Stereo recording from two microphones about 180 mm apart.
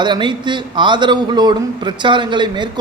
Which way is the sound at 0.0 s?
25° right (ahead or behind).